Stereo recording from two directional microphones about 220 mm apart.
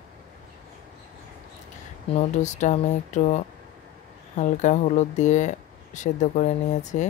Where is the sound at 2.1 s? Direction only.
30° left (ahead or behind).